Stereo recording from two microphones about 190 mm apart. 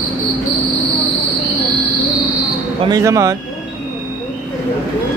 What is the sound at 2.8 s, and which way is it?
Speech, 15° right (ahead or behind).